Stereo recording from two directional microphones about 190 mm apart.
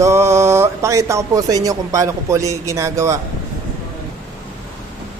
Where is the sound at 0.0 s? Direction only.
15° right (ahead or behind).